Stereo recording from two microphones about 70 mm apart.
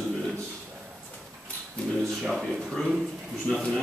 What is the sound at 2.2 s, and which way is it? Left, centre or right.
Speech, centre.